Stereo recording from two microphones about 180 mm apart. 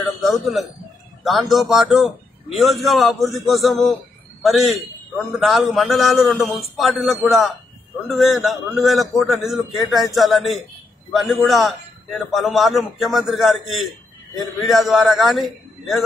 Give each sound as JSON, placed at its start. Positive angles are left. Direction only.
{"t": 0.2, "sound": "a man's voice", "side_deg": 0}